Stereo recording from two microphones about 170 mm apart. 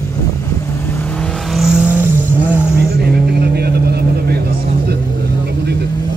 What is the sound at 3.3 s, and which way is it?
Vehicle, 70° right (ahead or behind).